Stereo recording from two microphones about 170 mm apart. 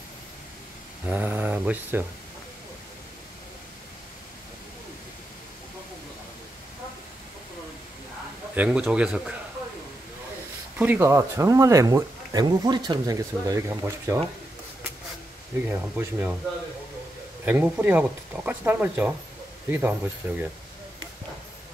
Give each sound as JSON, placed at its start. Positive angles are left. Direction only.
{"t": 1.0, "sound": "speech", "side_deg": -10}
{"t": 8.5, "sound": "speech", "side_deg": -5}
{"t": 10.8, "sound": "speech", "side_deg": -10}
{"t": 15.6, "sound": "speech", "side_deg": -10}
{"t": 17.5, "sound": "speech", "side_deg": -10}